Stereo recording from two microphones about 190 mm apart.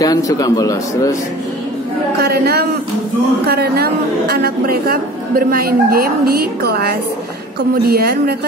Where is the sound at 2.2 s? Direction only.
55° right (ahead or behind).